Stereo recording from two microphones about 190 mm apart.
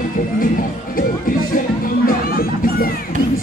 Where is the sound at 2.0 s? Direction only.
50° left (ahead or behind).